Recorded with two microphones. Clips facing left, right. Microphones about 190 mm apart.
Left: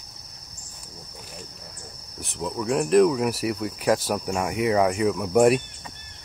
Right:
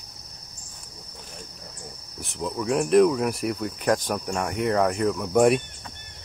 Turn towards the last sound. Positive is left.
turn(degrees=0)  # may be behind; listen again after turning